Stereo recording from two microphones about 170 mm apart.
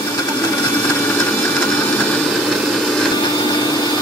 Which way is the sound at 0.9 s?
10° left (ahead or behind).